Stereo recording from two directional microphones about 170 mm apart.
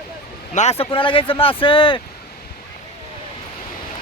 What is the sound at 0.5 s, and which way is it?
Speech, 40° left (ahead or behind).